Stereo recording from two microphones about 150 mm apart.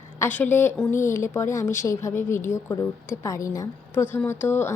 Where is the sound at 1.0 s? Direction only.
20° left (ahead or behind).